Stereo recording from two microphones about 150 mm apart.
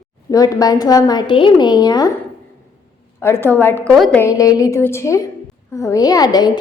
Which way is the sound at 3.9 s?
Centre (ahead or behind).